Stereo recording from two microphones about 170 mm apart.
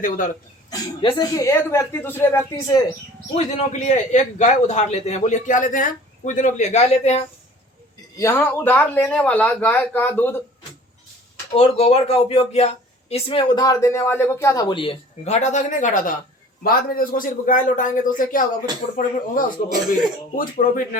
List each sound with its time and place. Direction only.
0.7 s a man's voice: 20° left (ahead or behind)
3.3 s a man's voice: 45° left (ahead or behind)
8.1 s a man's voice: 15° left (ahead or behind)
11.5 s speech: 35° left (ahead or behind)
13.7 s a man's voice: 15° left (ahead or behind); by 21.0 s 55° left (ahead or behind)